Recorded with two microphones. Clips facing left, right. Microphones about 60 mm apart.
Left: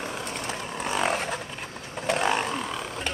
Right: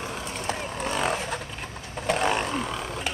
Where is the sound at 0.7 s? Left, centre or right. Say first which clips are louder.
Left 2 dB; centre.